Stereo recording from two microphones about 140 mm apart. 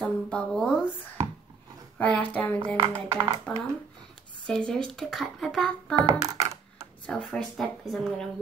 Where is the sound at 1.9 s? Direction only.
10° left (ahead or behind).